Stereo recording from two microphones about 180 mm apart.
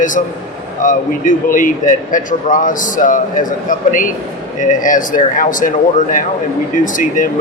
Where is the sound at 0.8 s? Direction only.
45° left (ahead or behind).